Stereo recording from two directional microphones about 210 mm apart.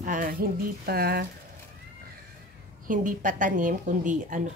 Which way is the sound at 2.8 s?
40° right (ahead or behind).